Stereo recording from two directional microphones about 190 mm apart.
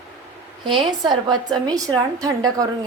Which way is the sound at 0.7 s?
25° right (ahead or behind).